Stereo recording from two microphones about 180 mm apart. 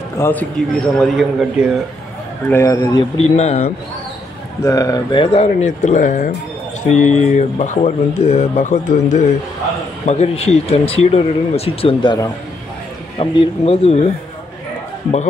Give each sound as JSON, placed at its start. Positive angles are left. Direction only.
{"t": 0.2, "sound": "a man's voice", "side_deg": 10}
{"t": 2.5, "sound": "a man's voice", "side_deg": 15}
{"t": 3.3, "sound": "speech", "side_deg": 35}
{"t": 4.6, "sound": "speech", "side_deg": 20}